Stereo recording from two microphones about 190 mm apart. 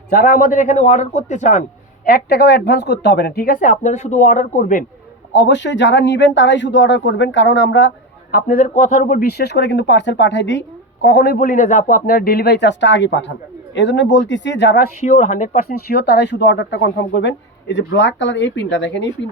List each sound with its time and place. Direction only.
0.1 s a man's voice: 50° left (ahead or behind)
2.0 s speech: 55° left (ahead or behind)
5.3 s speech: 70° left (ahead or behind)
15.0 s speech: 40° left (ahead or behind); by 19.1 s 70° left (ahead or behind)